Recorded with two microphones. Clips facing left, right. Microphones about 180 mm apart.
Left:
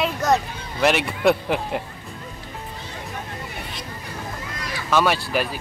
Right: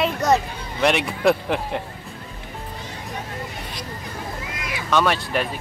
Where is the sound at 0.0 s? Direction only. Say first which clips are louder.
Right 1 dB; centre (ahead or behind).